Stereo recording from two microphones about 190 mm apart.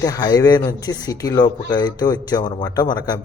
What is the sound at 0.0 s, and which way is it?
Speech, 20° left (ahead or behind).